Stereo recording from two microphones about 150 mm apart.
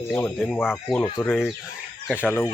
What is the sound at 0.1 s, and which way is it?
Speech, 10° left (ahead or behind).